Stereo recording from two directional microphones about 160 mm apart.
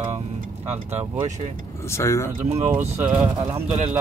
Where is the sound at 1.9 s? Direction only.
15° left (ahead or behind).